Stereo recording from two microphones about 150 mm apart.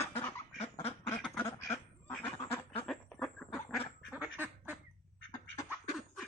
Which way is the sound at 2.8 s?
5° left (ahead or behind).